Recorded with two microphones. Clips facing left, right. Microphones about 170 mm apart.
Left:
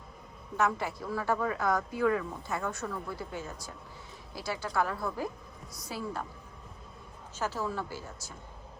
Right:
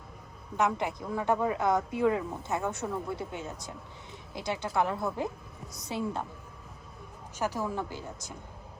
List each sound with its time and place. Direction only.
0.5 s speech: 20° right (ahead or behind)
7.3 s a woman's voice: 15° right (ahead or behind)